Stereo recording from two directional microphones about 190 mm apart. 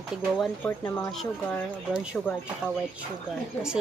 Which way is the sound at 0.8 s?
15° left (ahead or behind).